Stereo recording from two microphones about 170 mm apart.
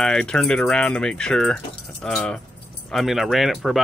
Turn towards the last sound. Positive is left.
turn(degrees=0)  # may be behind; listen again after turning